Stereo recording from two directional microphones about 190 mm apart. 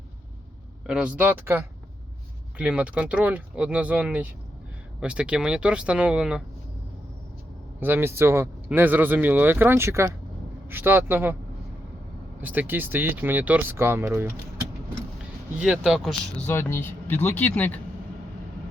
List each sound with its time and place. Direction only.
0.9 s speech: 5° right (ahead or behind)
7.8 s speech: 10° right (ahead or behind)
12.4 s speech: 10° right (ahead or behind)
15.5 s speech: 5° right (ahead or behind)
16.5 s speech: 15° left (ahead or behind)